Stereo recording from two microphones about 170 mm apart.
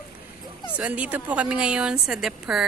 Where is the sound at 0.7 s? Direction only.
10° right (ahead or behind).